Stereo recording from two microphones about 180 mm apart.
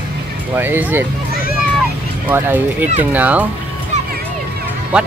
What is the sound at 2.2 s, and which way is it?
Speech, 10° right (ahead or behind).